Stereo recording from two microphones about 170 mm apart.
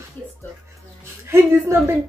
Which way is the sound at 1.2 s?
15° right (ahead or behind).